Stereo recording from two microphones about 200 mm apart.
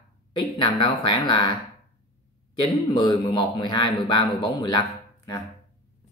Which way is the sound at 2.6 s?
20° left (ahead or behind).